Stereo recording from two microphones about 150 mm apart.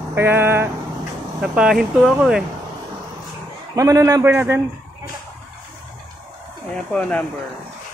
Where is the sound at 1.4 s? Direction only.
5° right (ahead or behind).